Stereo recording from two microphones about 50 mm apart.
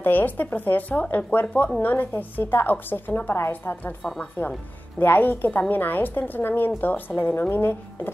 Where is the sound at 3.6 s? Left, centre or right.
Left.